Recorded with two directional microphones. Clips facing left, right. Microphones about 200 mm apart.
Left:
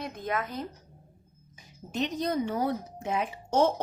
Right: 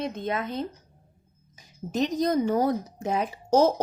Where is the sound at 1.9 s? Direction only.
40° right (ahead or behind).